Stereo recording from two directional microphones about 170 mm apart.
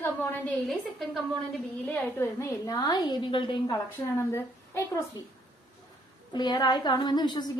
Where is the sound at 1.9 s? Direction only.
15° left (ahead or behind).